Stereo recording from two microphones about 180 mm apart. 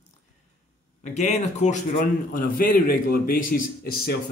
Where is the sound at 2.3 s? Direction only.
50° left (ahead or behind).